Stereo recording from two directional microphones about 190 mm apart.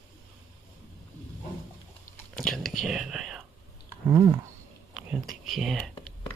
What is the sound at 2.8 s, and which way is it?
Whispering, centre (ahead or behind).